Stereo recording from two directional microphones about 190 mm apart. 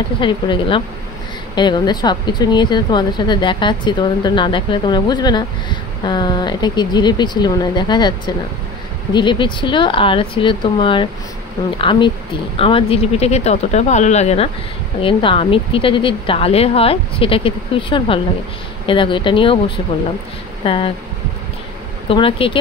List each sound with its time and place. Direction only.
0.2 s speech: 25° left (ahead or behind)
9.1 s speech: 25° left (ahead or behind)
20.6 s speech: 25° left (ahead or behind)
22.1 s speech: 25° left (ahead or behind)